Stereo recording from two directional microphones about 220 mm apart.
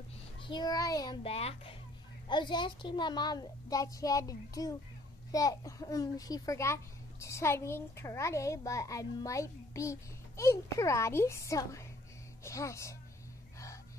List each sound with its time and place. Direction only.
0.4 s a woman's voice: 20° left (ahead or behind)